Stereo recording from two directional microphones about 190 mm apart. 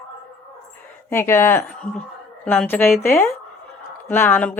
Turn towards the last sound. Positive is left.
turn(degrees=10)  # may be behind; listen again after turning